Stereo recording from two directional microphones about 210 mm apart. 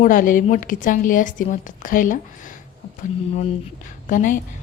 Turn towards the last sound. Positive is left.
turn(degrees=40)  # may be behind; listen again after turning